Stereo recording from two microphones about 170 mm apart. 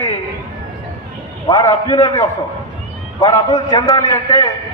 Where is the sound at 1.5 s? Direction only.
20° left (ahead or behind).